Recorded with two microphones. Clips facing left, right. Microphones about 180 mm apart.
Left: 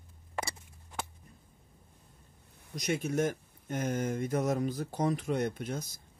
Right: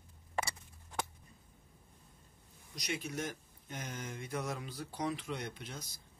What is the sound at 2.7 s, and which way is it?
Speech, 50° left (ahead or behind).